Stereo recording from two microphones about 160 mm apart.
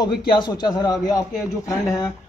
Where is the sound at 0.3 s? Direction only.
25° left (ahead or behind).